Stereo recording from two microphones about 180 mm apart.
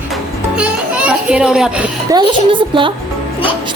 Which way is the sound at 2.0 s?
25° right (ahead or behind).